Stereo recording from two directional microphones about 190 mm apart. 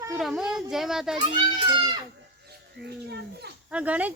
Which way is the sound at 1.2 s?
25° right (ahead or behind).